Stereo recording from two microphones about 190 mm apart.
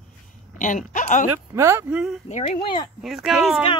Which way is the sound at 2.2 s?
35° left (ahead or behind).